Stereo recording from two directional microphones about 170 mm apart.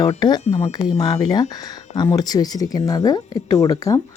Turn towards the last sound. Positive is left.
turn(degrees=20)  # may be behind; listen again after turning